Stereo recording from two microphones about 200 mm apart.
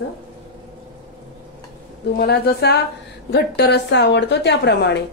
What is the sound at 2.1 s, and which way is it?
Speech, 55° left (ahead or behind).